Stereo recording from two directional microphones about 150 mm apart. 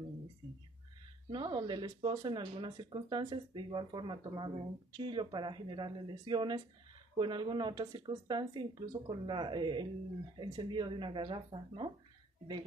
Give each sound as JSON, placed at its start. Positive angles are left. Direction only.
{"t": 1.3, "sound": "speech", "side_deg": -30}